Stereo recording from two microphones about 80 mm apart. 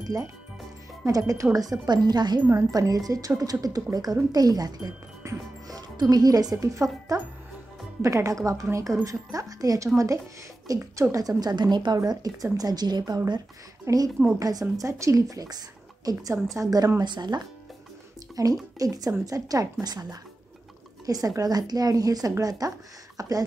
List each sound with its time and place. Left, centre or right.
1.0 s a woman's voice: right
2.5 s a woman's voice: right
12.0 s a woman's voice: right
17.0 s a woman's voice: right
18.3 s a woman's voice: right